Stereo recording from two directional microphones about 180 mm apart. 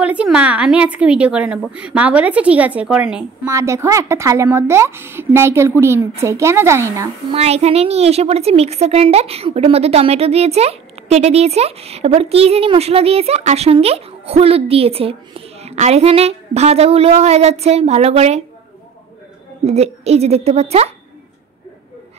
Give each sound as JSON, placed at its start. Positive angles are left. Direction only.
{"t": 0.0, "sound": "a woman's voice", "side_deg": -5}
{"t": 7.2, "sound": "a woman's voice", "side_deg": -35}
{"t": 19.6, "sound": "a woman's voice", "side_deg": -35}